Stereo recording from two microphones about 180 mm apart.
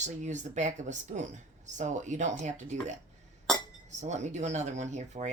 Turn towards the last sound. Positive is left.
turn(degrees=-40)  # may be behind; listen again after turning